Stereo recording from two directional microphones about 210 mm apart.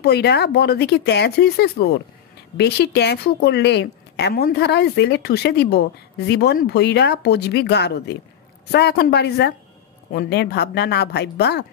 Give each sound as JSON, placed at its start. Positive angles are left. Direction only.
{"t": 0.0, "sound": "a woman's voice", "side_deg": 50}